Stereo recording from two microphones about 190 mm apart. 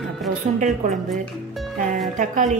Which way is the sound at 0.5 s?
40° right (ahead or behind).